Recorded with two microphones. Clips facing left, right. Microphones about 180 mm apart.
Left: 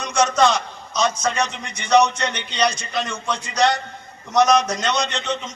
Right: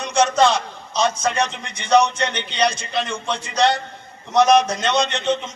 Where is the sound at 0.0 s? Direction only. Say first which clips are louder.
Right 1 dB; 30° right (ahead or behind).